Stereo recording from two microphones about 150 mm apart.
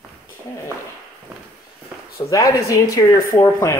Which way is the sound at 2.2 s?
20° left (ahead or behind).